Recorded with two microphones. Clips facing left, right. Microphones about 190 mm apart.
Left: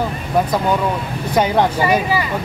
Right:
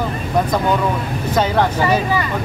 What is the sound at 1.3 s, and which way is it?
Speech, 15° left (ahead or behind).